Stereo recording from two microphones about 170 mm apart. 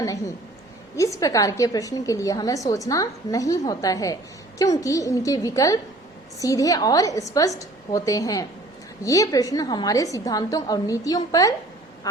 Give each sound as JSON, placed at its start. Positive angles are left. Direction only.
{"t": 0.9, "sound": "a woman's voice", "side_deg": 20}